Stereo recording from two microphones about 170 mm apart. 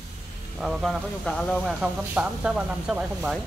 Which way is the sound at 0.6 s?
Centre (ahead or behind).